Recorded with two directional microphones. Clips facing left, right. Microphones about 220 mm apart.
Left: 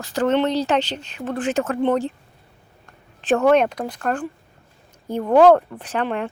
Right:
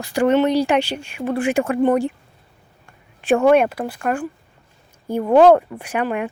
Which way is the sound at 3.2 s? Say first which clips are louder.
Right 2 dB; 10° right (ahead or behind).